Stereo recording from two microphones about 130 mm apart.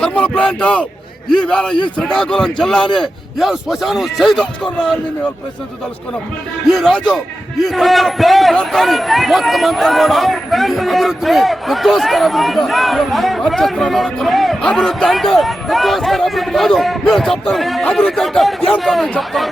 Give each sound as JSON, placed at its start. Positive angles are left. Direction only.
{"t": 0.0, "sound": "a man's voice", "side_deg": 10}
{"t": 6.7, "sound": "a man's voice", "side_deg": 5}